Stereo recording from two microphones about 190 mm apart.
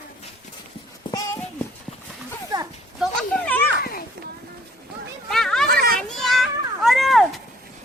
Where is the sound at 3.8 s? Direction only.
50° left (ahead or behind).